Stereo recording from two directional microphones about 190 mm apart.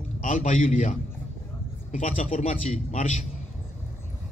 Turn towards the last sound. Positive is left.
turn(degrees=40)  # may be behind; listen again after turning